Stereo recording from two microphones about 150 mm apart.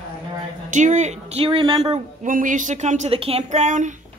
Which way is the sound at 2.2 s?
60° right (ahead or behind).